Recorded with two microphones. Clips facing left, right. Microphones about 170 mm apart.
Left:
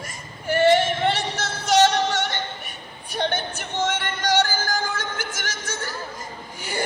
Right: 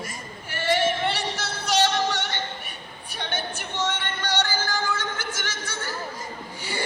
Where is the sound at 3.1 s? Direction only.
45° left (ahead or behind).